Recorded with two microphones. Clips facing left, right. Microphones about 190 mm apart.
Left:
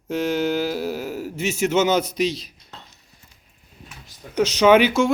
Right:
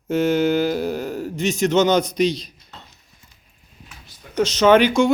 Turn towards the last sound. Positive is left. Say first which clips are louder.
# right 1 dB
turn(degrees=5)  # may be behind; listen again after turning